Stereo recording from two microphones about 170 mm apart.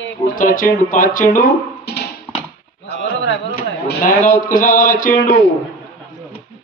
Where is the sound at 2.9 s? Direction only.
90° left.